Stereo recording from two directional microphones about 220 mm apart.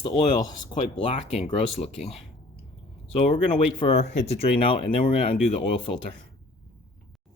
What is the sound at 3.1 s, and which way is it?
Speech, 25° left (ahead or behind).